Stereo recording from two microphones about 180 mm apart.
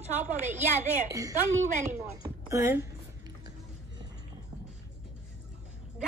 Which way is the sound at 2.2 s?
15° right (ahead or behind).